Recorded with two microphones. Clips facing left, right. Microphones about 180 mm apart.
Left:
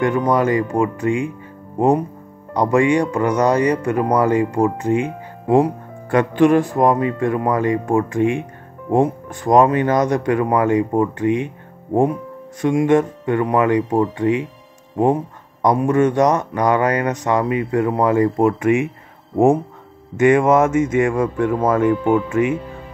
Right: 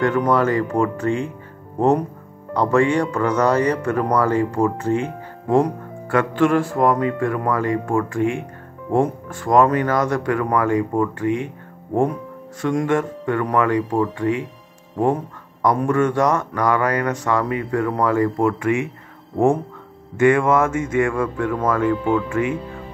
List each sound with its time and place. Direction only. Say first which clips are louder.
0.0 s speech: left 1 dB; 15° left (ahead or behind)
15.6 s speech: left 3 dB; 20° left (ahead or behind)
20.2 s speech: left 2 dB; 20° left (ahead or behind)